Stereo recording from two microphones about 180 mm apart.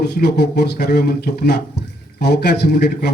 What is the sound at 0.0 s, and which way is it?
Speech, 65° left (ahead or behind).